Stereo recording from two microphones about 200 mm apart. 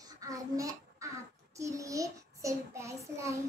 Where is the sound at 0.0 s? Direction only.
15° right (ahead or behind).